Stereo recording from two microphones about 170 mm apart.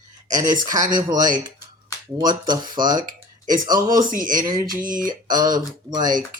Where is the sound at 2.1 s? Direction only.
25° right (ahead or behind).